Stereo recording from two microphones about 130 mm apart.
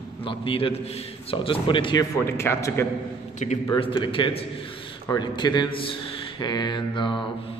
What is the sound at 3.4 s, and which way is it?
Speech, 65° left (ahead or behind).